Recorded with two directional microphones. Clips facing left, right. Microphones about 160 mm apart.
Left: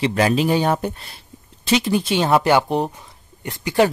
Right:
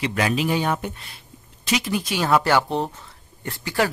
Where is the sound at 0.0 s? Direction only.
30° left (ahead or behind).